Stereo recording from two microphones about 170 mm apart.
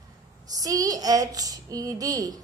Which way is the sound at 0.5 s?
20° right (ahead or behind).